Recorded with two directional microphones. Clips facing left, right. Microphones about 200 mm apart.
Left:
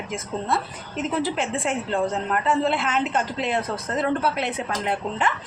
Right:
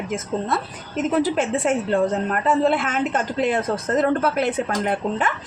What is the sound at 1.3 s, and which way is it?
A woman's voice, 45° right (ahead or behind).